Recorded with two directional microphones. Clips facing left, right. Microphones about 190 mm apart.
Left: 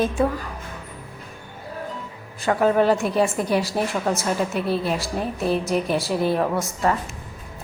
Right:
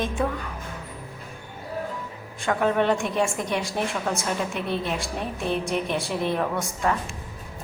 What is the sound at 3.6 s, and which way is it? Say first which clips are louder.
A woman's voice: left 4 dB; centre (ahead or behind).